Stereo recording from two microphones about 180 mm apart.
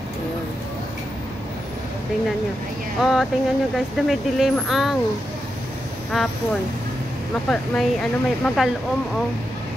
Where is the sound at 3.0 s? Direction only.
Centre (ahead or behind).